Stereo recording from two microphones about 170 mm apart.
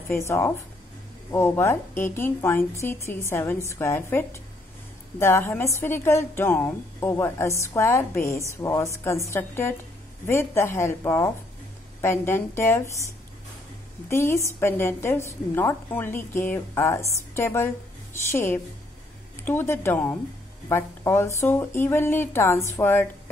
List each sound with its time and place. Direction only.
0.1 s a woman's voice: 15° left (ahead or behind)
14.0 s a woman's voice: 15° left (ahead or behind)